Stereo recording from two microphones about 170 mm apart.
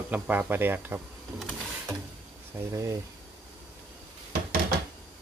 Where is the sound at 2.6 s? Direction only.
20° right (ahead or behind).